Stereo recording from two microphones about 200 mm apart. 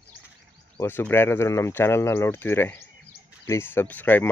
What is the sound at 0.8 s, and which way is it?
Speech, 10° left (ahead or behind).